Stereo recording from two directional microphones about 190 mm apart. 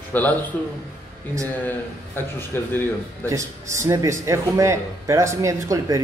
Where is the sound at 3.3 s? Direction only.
15° right (ahead or behind).